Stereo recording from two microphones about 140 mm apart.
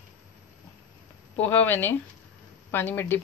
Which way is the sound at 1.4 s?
15° left (ahead or behind).